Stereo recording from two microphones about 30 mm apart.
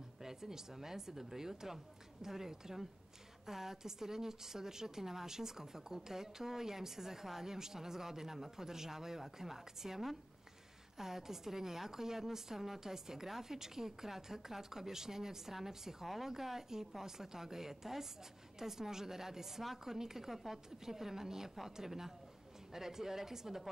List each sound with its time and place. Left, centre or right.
0.2 s a woman's voice: centre